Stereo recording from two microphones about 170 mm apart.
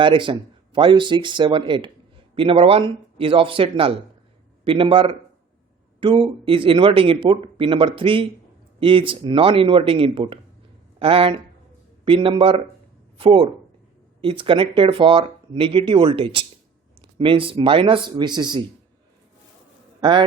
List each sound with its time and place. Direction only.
0.0 s speech: 30° right (ahead or behind)
20.0 s a man's voice: 30° right (ahead or behind)